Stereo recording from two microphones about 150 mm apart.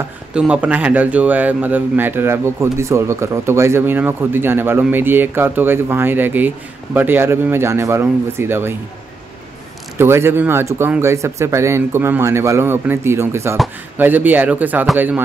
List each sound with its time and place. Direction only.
0.3 s a man's voice: 5° right (ahead or behind)
9.9 s a man's voice: 15° right (ahead or behind)